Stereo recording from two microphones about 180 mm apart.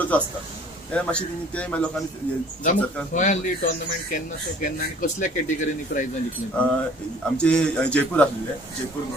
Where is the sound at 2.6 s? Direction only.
45° left (ahead or behind).